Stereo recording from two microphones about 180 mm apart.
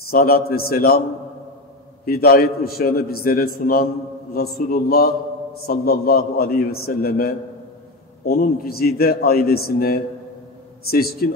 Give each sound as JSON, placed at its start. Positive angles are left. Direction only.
{"t": 0.1, "sound": "a man's voice", "side_deg": 55}
{"t": 2.0, "sound": "a man's voice", "side_deg": 55}